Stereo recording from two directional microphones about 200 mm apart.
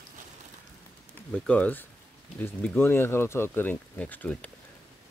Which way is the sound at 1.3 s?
5° left (ahead or behind).